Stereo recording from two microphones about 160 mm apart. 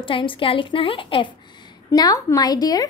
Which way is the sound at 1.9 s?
20° left (ahead or behind).